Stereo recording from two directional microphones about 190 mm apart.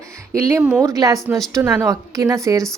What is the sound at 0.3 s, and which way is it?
A woman's voice, 15° right (ahead or behind).